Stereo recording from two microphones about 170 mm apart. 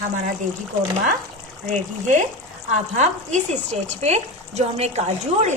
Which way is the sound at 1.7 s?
45° right (ahead or behind).